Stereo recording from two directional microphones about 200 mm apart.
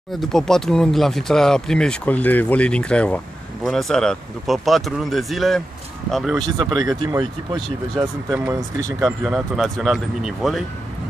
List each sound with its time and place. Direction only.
0.2 s speech: centre (ahead or behind)
6.3 s speech: 20° right (ahead or behind)
9.0 s speech: centre (ahead or behind)